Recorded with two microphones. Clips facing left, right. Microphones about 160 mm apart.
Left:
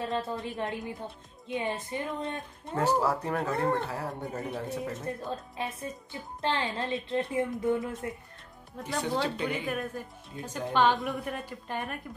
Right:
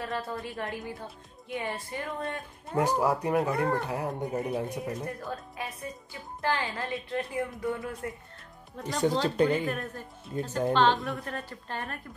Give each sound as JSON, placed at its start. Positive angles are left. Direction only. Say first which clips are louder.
{"t": 0.0, "sound": "a woman's voice", "louder": "left 2 dB", "side_deg": 20}
{"t": 2.7, "sound": "speech", "louder": "right 1 dB", "side_deg": -15}
{"t": 5.2, "sound": "a woman's voice", "louder": "left 2 dB", "side_deg": 25}
{"t": 8.7, "sound": "a woman's voice", "louder": "right 3 dB", "side_deg": 10}
{"t": 9.4, "sound": "speech", "louder": "right 8 dB", "side_deg": -45}
{"t": 10.4, "sound": "a woman's voice", "louder": "right 2 dB", "side_deg": 10}